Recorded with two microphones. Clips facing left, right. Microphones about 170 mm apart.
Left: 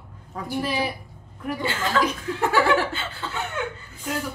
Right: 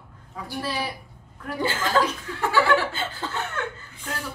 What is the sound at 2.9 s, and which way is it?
Chuckle, 40° right (ahead or behind).